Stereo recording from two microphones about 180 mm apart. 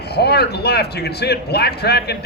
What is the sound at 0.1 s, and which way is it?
Speech, 65° left (ahead or behind).